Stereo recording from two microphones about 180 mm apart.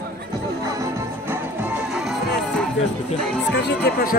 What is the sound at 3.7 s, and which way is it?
Speech, 60° left (ahead or behind).